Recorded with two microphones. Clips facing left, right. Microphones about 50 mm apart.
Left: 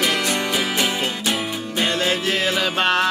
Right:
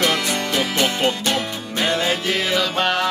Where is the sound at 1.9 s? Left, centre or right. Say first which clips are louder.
Right 2 dB; centre.